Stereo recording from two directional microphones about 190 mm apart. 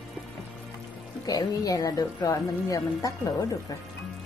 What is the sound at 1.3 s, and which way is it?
Speech, 20° left (ahead or behind).